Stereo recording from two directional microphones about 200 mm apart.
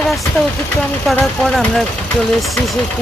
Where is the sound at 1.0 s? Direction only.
Centre (ahead or behind).